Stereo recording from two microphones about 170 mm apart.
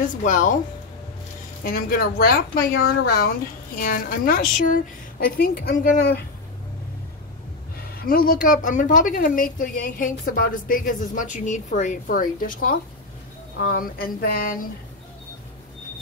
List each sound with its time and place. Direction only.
0.2 s a woman's voice: 50° left (ahead or behind)
1.6 s a woman's voice: 60° left (ahead or behind)
8.0 s a woman's voice: 60° left (ahead or behind)